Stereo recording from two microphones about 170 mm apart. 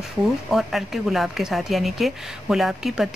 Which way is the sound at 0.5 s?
Centre (ahead or behind).